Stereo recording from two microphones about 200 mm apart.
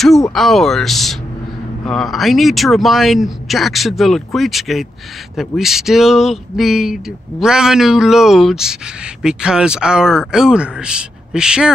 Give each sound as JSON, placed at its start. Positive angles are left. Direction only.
{"t": 0.3, "sound": "speech", "side_deg": 0}